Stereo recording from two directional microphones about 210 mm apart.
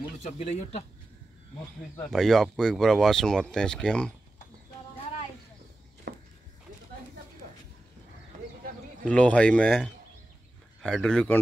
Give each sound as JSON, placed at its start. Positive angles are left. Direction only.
{"t": 0.4, "sound": "speech", "side_deg": 30}
{"t": 2.0, "sound": "speech", "side_deg": 0}
{"t": 6.1, "sound": "a sound", "side_deg": -50}
{"t": 9.0, "sound": "speech", "side_deg": 5}